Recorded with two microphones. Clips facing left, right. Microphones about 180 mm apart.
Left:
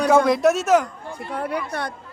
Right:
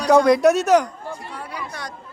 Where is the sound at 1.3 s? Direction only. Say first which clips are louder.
Left 7 dB; 55° left (ahead or behind).